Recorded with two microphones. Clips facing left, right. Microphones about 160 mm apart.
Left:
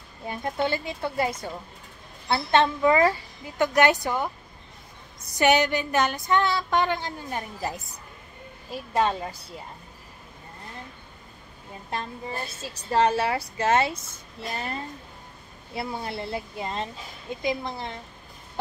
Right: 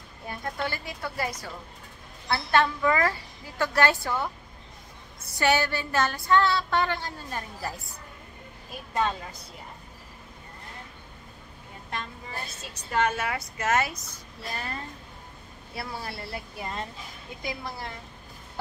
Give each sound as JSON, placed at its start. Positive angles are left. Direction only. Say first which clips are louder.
{"t": 0.3, "sound": "a woman's voice", "louder": "left 6 dB", "side_deg": 20}
{"t": 12.6, "sound": "speech", "louder": "left 4 dB", "side_deg": 30}